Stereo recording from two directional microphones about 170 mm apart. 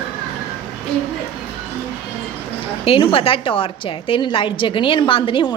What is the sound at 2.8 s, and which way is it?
A woman's voice, 30° left (ahead or behind).